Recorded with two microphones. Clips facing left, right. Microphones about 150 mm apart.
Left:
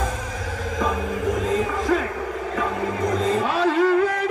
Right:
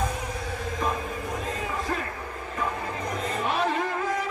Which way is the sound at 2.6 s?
90° left.